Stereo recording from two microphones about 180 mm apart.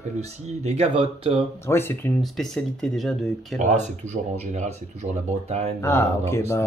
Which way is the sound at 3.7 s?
40° right (ahead or behind).